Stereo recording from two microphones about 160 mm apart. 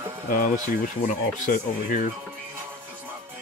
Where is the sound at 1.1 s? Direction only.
55° left (ahead or behind).